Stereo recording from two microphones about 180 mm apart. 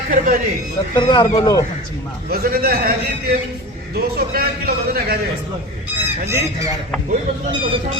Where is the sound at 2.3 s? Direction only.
55° right (ahead or behind).